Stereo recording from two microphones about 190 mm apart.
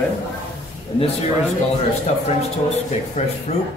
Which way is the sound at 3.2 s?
35° left (ahead or behind).